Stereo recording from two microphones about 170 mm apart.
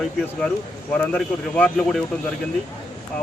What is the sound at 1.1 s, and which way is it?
Speech, 5° left (ahead or behind).